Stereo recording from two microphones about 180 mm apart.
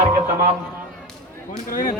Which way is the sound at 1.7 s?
50° left (ahead or behind).